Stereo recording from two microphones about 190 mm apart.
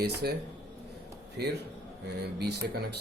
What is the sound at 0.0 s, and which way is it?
Speech, 55° right (ahead or behind).